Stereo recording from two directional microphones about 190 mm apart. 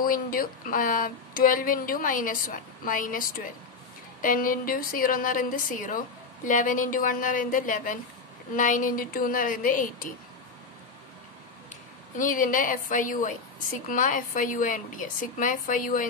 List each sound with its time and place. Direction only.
0.0 s a woman's voice: 50° left (ahead or behind)
12.2 s a woman's voice: 45° left (ahead or behind)